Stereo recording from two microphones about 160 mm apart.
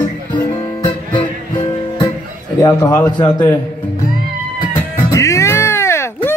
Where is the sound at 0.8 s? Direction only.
30° left (ahead or behind).